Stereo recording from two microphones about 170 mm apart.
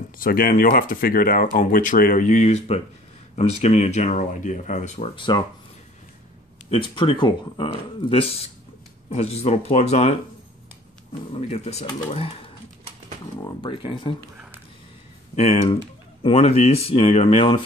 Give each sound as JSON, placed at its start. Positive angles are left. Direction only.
{"t": 0.2, "sound": "speech", "side_deg": 55}
{"t": 5.1, "sound": "speech", "side_deg": 30}
{"t": 6.7, "sound": "speech", "side_deg": 30}
{"t": 11.3, "sound": "speech", "side_deg": 40}
{"t": 13.4, "sound": "speech", "side_deg": 25}
{"t": 15.3, "sound": "speech", "side_deg": 40}